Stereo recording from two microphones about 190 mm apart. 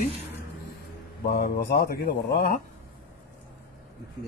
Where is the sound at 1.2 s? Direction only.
50° left (ahead or behind).